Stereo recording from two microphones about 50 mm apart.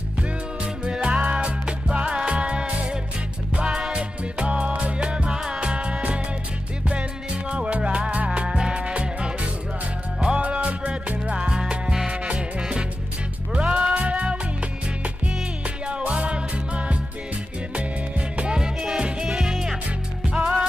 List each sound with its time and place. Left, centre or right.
0.8 s music: centre
15.9 s music: right
18.3 s music: right
20.3 s music: right